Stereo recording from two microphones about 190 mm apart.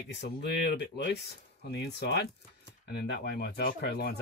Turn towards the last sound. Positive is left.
turn(degrees=55)  # may be behind; listen again after turning